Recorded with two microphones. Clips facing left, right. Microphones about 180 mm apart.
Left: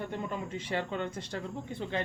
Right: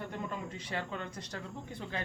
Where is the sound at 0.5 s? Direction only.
25° left (ahead or behind).